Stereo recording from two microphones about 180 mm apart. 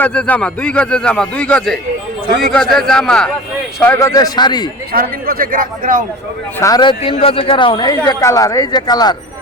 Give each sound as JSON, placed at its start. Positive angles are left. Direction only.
{"t": 0.0, "sound": "a man's voice", "side_deg": 5}
{"t": 4.1, "sound": "speech", "side_deg": 25}
{"t": 4.9, "sound": "speech", "side_deg": -55}
{"t": 6.6, "sound": "speech", "side_deg": 20}